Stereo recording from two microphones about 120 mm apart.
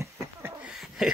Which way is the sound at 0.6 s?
5° right (ahead or behind).